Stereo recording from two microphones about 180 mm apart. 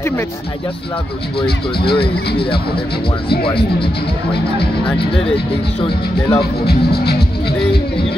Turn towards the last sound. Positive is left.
turn(degrees=65)  # may be behind; listen again after turning